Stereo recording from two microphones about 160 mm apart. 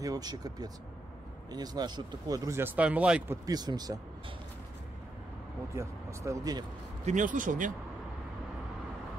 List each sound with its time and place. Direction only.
0.0 s speech: 25° right (ahead or behind)
3.4 s speech: 25° right (ahead or behind)
5.8 s speech: 20° right (ahead or behind)
7.1 s speech: 55° right (ahead or behind)